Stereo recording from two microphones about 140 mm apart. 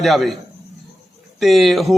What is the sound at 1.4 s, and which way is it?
Speech, centre (ahead or behind).